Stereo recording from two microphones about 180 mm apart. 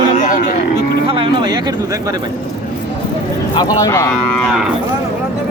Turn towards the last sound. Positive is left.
turn(degrees=20)  # may be behind; listen again after turning